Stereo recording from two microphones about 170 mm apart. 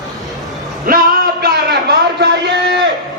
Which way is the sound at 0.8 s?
55° right (ahead or behind).